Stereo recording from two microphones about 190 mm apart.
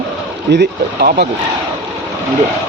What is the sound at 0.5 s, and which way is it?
Speech, 65° right (ahead or behind).